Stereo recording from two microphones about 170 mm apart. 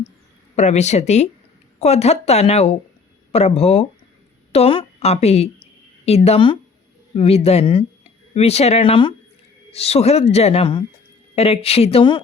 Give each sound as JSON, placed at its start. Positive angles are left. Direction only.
{"t": 0.5, "sound": "speech", "side_deg": 40}